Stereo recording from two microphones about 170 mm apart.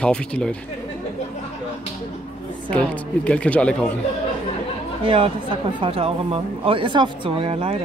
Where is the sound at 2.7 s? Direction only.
5° left (ahead or behind).